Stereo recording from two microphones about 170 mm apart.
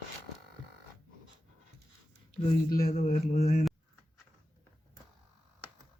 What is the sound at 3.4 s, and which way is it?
Speech, 55° left (ahead or behind).